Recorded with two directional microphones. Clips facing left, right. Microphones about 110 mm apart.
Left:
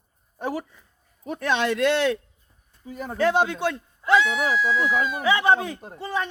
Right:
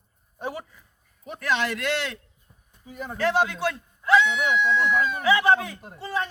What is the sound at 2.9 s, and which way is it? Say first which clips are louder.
Speech: left 2 dB; 45° left (ahead or behind).